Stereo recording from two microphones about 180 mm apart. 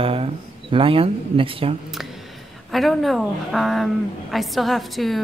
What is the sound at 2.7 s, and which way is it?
A woman's voice, centre (ahead or behind).